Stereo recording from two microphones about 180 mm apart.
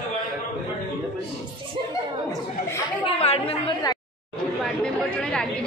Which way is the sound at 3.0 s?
35° left (ahead or behind).